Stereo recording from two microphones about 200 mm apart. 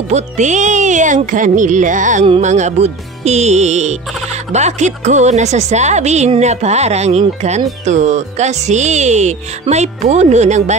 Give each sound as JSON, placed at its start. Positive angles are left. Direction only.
{"t": 0.1, "sound": "music", "side_deg": -35}